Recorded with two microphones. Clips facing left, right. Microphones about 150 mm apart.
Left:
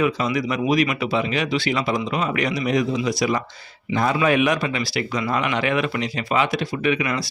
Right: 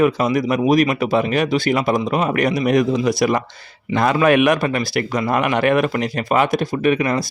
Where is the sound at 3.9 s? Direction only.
65° right (ahead or behind); by 7.2 s 45° right (ahead or behind).